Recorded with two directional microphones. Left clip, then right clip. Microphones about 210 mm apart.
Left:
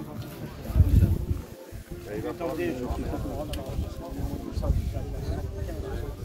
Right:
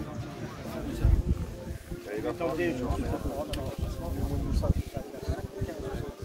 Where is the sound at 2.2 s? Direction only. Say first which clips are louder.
Right 1 dB; 25° right (ahead or behind).